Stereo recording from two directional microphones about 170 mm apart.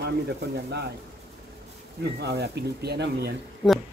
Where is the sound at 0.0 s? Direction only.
80° right.